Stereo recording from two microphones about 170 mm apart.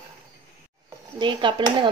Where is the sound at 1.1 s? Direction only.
30° right (ahead or behind).